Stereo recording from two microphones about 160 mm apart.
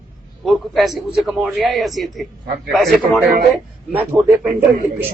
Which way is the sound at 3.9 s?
10° right (ahead or behind).